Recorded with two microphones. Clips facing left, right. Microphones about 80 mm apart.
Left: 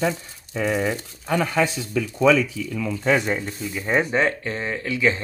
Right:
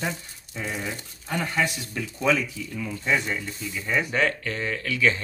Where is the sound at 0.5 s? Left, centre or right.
Left.